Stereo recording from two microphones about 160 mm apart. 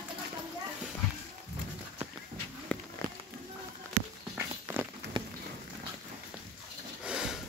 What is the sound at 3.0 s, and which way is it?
Music, 55° right (ahead or behind).